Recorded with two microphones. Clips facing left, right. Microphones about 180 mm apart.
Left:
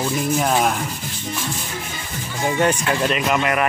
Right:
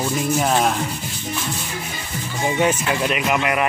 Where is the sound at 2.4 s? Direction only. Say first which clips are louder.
Even; 5° right (ahead or behind).